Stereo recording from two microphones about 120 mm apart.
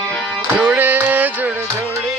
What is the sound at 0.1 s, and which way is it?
Music, 5° left (ahead or behind).